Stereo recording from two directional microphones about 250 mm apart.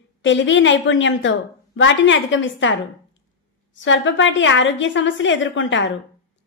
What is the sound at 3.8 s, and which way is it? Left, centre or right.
A woman's voice, left.